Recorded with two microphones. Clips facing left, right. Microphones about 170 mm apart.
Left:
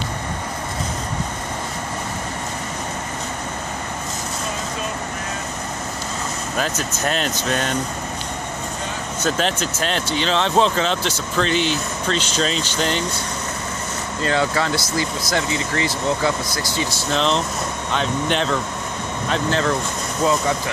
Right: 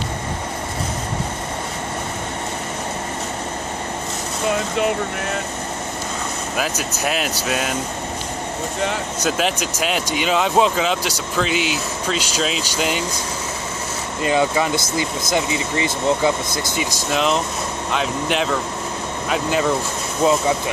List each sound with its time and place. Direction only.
6.5 s speech: 10° right (ahead or behind)
9.2 s speech: 10° right (ahead or behind)
14.2 s speech: 15° right (ahead or behind)
17.1 s speech: 5° right (ahead or behind)
20.2 s speech: 20° right (ahead or behind)